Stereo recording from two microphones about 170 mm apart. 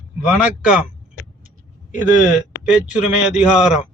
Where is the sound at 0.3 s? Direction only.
5° right (ahead or behind).